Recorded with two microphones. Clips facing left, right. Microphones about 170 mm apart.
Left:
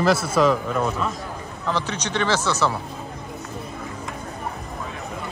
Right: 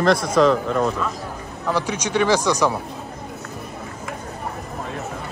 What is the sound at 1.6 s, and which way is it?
Speech, 10° right (ahead or behind).